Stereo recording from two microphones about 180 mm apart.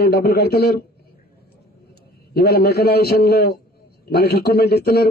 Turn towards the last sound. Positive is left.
turn(degrees=60)  # may be behind; listen again after turning